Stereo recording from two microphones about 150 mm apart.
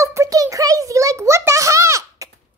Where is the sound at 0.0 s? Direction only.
20° right (ahead or behind).